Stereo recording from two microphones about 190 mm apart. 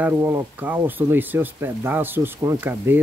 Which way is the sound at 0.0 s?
10° right (ahead or behind).